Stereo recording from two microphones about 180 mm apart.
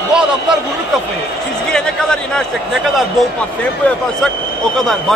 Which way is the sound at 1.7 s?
5° left (ahead or behind).